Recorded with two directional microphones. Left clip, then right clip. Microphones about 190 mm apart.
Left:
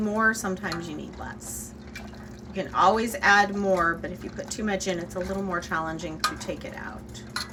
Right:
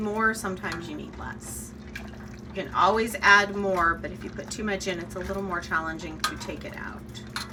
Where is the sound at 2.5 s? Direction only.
20° left (ahead or behind).